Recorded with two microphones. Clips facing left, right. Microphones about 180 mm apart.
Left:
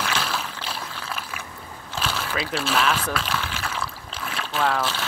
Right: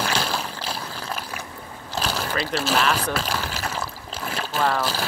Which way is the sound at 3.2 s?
35° right (ahead or behind).